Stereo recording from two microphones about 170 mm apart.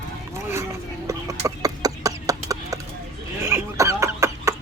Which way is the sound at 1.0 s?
20° right (ahead or behind).